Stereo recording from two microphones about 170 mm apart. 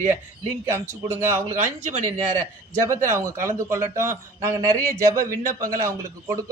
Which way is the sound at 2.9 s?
15° right (ahead or behind).